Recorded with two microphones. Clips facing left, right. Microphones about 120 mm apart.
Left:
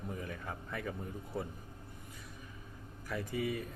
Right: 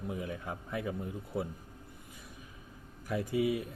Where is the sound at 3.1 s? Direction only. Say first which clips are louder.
Right 6 dB; 15° right (ahead or behind).